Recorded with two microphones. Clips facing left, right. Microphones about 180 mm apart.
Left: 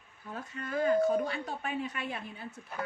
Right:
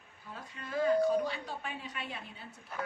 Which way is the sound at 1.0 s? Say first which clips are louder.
Left 1 dB; 50° left (ahead or behind).